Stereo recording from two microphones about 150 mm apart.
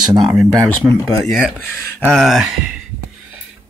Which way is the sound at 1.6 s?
10° left (ahead or behind).